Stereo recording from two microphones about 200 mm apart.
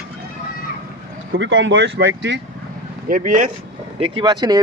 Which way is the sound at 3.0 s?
40° right (ahead or behind).